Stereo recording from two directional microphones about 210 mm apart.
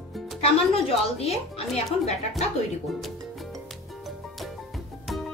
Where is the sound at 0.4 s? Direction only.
30° left (ahead or behind).